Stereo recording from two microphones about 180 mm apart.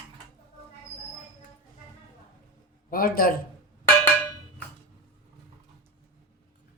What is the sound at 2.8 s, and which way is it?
Speech, 55° left (ahead or behind).